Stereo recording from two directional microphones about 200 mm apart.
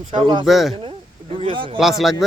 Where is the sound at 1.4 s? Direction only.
25° right (ahead or behind).